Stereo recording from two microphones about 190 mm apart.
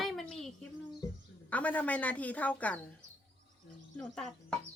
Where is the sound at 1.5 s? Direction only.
5° left (ahead or behind).